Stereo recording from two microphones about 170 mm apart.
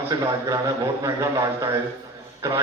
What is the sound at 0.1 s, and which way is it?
A man's voice, 25° right (ahead or behind).